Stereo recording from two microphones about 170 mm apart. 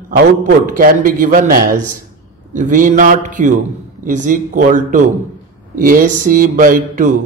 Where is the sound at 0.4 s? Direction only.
55° right (ahead or behind).